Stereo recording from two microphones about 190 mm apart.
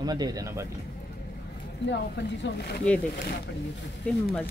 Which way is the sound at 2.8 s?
5° left (ahead or behind).